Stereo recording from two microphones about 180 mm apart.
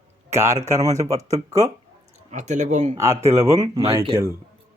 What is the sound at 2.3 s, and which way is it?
Speech, 40° right (ahead or behind).